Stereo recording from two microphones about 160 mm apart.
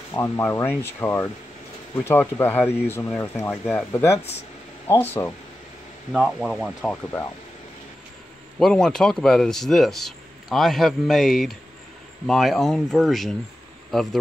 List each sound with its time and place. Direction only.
0.1 s speech: 15° left (ahead or behind)
6.1 s speech: centre (ahead or behind)
8.5 s speech: 5° left (ahead or behind)